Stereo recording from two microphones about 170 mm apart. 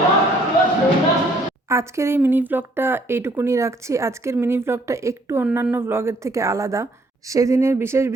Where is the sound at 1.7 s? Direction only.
15° right (ahead or behind).